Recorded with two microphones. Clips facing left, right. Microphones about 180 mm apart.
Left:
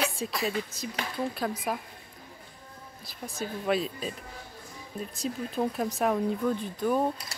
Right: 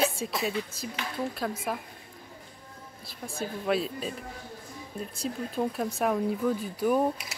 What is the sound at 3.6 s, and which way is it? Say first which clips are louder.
Speech: even; centre (ahead or behind).